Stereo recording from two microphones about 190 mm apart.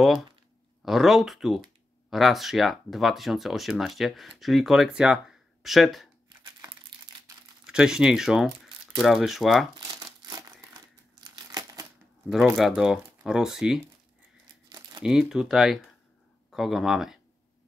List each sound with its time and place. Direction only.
0.8 s speech: centre (ahead or behind)
6.2 s crumpling: 20° right (ahead or behind)
7.6 s speech: 5° right (ahead or behind)
9.8 s crumpling: 20° right (ahead or behind)
12.5 s speech: centre (ahead or behind)
14.7 s crumpling: 20° right (ahead or behind)
15.0 s speech: centre (ahead or behind)